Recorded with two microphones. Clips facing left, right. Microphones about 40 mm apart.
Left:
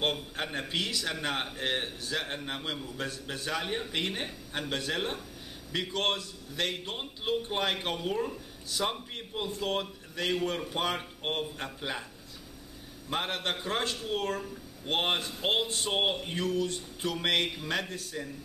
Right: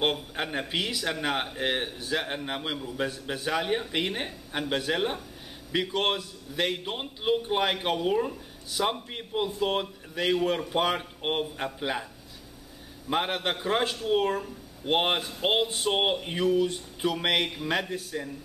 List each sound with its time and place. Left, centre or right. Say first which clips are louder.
0.0 s speech: right 3 dB; centre
13.1 s speech: right 4 dB; centre